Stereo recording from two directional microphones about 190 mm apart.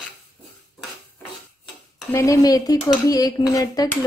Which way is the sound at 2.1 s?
15° left (ahead or behind).